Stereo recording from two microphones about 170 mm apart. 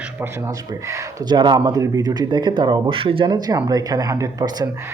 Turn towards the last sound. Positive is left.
turn(degrees=-20)  # may be behind; listen again after turning